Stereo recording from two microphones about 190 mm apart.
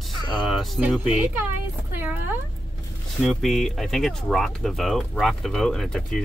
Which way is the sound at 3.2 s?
Centre (ahead or behind).